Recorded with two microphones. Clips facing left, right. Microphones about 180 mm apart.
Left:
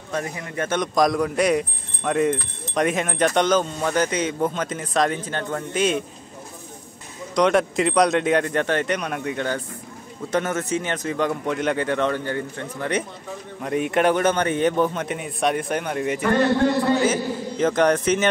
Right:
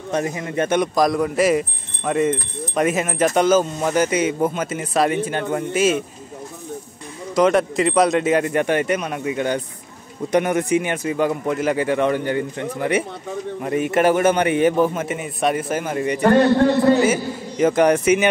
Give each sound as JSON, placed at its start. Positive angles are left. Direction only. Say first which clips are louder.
{"t": 0.1, "sound": "a man's voice", "louder": "right 5 dB", "side_deg": -20}
{"t": 0.9, "sound": "a man's voice", "louder": "right 2 dB", "side_deg": 0}
{"t": 7.3, "sound": "a man's voice", "louder": "right 2 dB", "side_deg": 0}
{"t": 13.6, "sound": "a man's voice", "louder": "right 2 dB", "side_deg": 0}